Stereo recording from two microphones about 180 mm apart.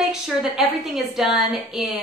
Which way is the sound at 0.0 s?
Centre (ahead or behind).